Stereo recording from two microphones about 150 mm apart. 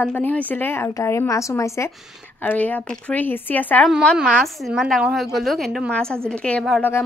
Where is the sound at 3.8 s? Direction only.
Centre (ahead or behind).